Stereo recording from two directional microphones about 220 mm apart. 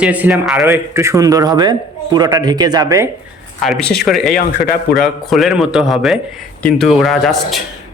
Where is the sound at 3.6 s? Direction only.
Centre (ahead or behind).